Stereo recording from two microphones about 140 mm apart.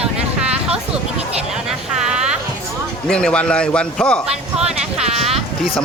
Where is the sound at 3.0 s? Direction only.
5° left (ahead or behind).